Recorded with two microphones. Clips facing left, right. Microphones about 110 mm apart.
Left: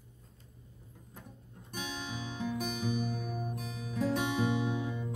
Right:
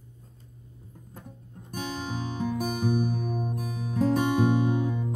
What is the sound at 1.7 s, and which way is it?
Music, 45° right (ahead or behind).